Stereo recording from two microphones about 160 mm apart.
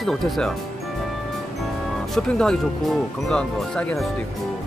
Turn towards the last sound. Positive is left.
turn(degrees=5)  # may be behind; listen again after turning